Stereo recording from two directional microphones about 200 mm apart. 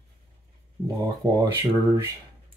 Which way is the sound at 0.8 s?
20° right (ahead or behind).